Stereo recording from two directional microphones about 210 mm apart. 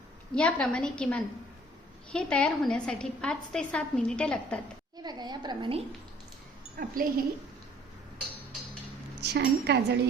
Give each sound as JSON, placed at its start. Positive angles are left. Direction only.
{"t": 0.3, "sound": "a woman's voice", "side_deg": 5}
{"t": 5.0, "sound": "a woman's voice", "side_deg": -20}
{"t": 6.7, "sound": "speech", "side_deg": -40}
{"t": 9.2, "sound": "speech", "side_deg": -50}